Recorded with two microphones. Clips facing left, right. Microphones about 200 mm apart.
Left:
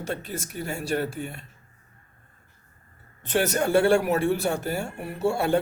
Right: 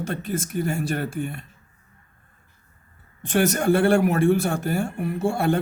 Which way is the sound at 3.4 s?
55° right (ahead or behind).